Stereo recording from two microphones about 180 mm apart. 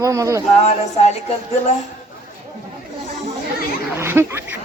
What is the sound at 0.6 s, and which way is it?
Speech, 35° left (ahead or behind).